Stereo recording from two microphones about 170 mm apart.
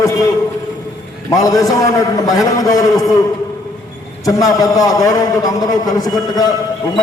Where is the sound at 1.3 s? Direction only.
20° left (ahead or behind).